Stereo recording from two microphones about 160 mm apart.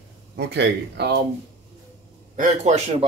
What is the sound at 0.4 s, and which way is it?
Speech, 90° right.